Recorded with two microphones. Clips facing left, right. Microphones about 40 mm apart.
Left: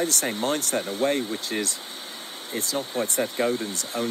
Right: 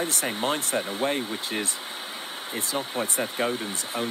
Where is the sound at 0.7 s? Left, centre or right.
Right.